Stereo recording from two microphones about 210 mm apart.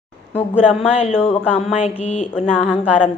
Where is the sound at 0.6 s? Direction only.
5° right (ahead or behind).